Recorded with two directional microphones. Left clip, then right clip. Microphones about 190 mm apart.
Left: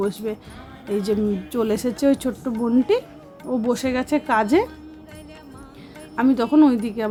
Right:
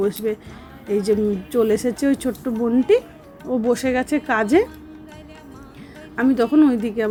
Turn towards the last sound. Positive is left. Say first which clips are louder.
# even
turn(degrees=0)  # may be behind; listen again after turning